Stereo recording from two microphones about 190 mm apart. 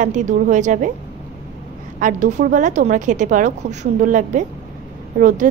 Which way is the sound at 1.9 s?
40° right (ahead or behind).